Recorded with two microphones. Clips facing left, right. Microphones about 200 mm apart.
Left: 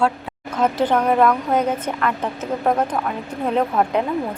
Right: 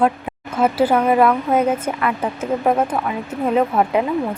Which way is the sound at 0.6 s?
5° right (ahead or behind).